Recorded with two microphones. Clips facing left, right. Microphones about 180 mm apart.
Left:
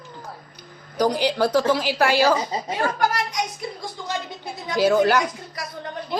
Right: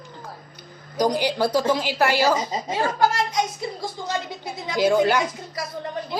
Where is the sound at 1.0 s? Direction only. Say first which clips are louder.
Left 1 dB; 10° right (ahead or behind).